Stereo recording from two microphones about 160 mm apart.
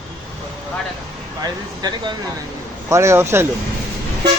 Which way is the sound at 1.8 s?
25° right (ahead or behind).